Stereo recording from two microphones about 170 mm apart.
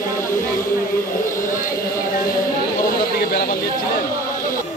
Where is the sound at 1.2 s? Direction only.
50° left (ahead or behind).